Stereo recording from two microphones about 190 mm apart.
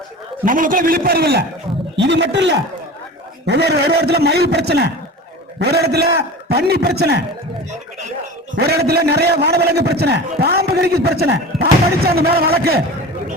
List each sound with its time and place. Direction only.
0.4 s a man's voice: 45° right (ahead or behind)
2.0 s a man's voice: 65° right (ahead or behind)
8.5 s a man's voice: 55° right (ahead or behind)